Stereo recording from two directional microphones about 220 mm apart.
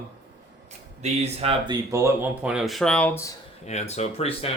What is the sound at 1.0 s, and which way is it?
Speech, 25° right (ahead or behind).